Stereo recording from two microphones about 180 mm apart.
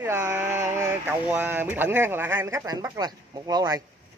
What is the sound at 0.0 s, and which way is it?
Speech, 15° right (ahead or behind).